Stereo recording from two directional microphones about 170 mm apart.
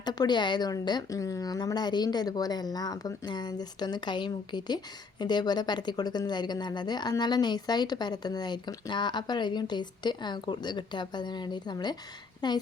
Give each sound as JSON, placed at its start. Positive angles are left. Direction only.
{"t": 0.0, "sound": "speech", "side_deg": 25}